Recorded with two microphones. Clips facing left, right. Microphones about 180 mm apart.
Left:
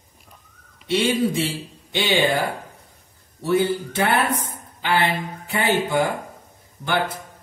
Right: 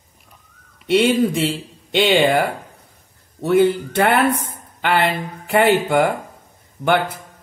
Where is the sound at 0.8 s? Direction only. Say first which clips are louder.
Right 5 dB; 65° right (ahead or behind).